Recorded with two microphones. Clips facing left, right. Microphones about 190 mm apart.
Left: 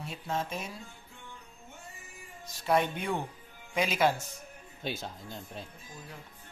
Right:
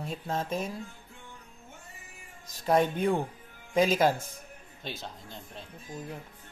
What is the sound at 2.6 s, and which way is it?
Speech, 40° right (ahead or behind).